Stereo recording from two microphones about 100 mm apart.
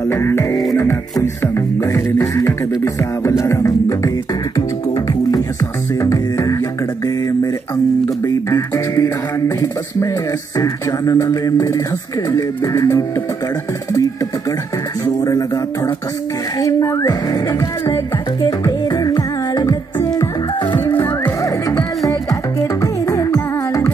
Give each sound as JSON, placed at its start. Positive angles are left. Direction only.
{"t": 0.1, "sound": "music", "side_deg": 25}
{"t": 8.5, "sound": "music", "side_deg": 35}
{"t": 10.6, "sound": "music", "side_deg": 35}
{"t": 15.2, "sound": "music", "side_deg": 35}
{"t": 20.8, "sound": "music", "side_deg": 20}
{"t": 21.4, "sound": "music", "side_deg": 35}